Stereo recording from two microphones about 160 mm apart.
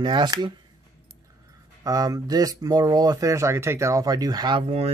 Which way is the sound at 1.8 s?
25° right (ahead or behind).